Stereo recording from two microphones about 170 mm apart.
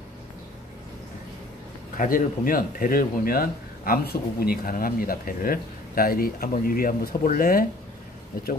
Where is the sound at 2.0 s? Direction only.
55° left (ahead or behind).